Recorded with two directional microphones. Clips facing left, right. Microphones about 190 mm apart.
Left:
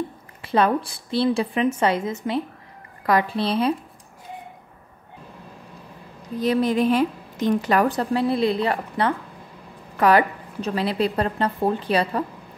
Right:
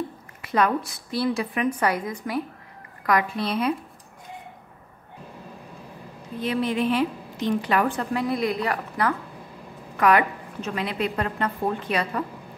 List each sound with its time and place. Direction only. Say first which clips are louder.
0.4 s a woman's voice: left 3 dB; 30° left (ahead or behind)
6.4 s a woman's voice: left 4 dB; 40° left (ahead or behind)